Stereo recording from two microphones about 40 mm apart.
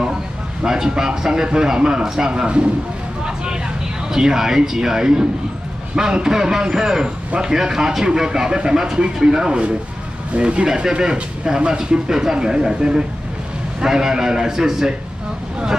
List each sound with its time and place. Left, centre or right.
0.7 s speech: centre
4.1 s speech: centre
10.3 s speech: right